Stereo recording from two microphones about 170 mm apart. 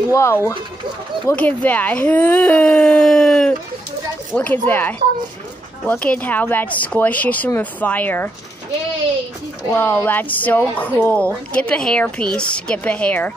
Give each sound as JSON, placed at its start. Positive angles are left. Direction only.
{"t": 0.1, "sound": "a woman's voice", "side_deg": 15}
{"t": 9.6, "sound": "a woman's voice", "side_deg": 10}